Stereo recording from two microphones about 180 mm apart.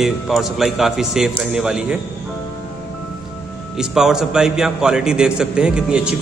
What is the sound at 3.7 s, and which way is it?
A man's voice, 5° right (ahead or behind).